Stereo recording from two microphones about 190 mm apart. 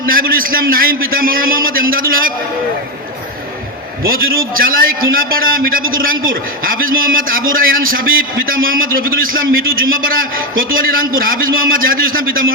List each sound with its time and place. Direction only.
0.1 s a man's voice: 50° right (ahead or behind)
4.0 s a man's voice: 50° right (ahead or behind)